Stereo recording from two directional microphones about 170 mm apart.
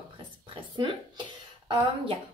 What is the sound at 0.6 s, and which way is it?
Speech, 25° right (ahead or behind).